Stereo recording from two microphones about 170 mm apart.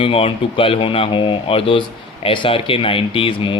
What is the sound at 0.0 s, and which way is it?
Speech, 35° left (ahead or behind).